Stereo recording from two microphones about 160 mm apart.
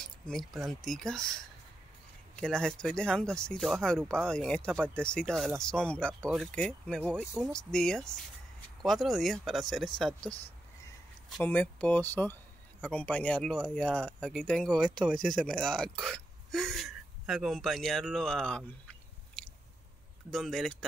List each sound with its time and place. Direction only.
0.0 s a sound: 5° left (ahead or behind)
0.8 s speech: 5° left (ahead or behind)
2.4 s speech: 5° left (ahead or behind)
11.4 s speech: 10° left (ahead or behind)
19.4 s chewing: 5° left (ahead or behind)
20.2 s speech: centre (ahead or behind)